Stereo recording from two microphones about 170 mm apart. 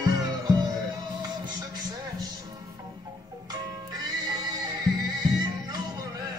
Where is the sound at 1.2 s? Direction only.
25° right (ahead or behind).